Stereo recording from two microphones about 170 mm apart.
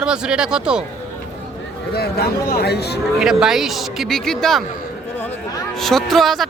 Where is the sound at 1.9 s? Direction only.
65° left (ahead or behind).